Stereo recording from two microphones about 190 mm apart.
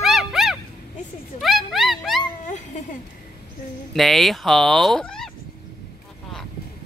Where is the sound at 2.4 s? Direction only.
40° left (ahead or behind).